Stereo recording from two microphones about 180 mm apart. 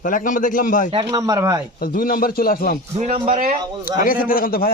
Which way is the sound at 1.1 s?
15° right (ahead or behind).